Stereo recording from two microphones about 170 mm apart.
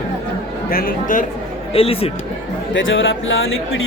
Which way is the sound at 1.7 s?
35° left (ahead or behind).